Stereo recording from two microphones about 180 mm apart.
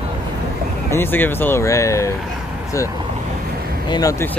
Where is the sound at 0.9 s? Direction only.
10° left (ahead or behind).